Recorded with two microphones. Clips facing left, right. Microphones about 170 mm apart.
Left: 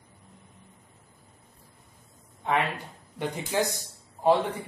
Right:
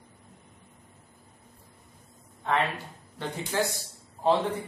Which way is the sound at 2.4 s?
15° left (ahead or behind).